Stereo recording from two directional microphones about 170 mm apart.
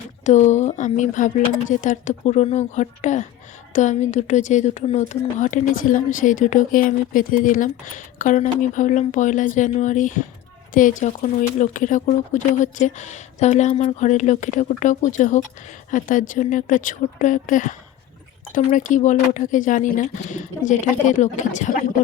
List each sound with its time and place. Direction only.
0.3 s a woman's voice: 45° left (ahead or behind)